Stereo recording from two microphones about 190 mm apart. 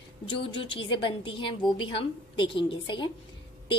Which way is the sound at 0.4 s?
25° left (ahead or behind).